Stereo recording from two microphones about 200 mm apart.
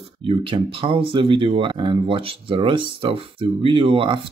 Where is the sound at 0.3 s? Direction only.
25° right (ahead or behind).